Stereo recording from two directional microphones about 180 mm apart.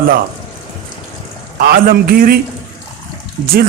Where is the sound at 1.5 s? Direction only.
55° right (ahead or behind).